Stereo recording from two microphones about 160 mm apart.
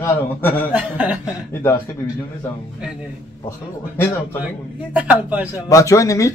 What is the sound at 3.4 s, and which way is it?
Speech, 15° left (ahead or behind).